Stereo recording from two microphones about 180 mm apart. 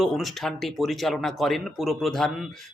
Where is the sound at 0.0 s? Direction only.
Centre (ahead or behind).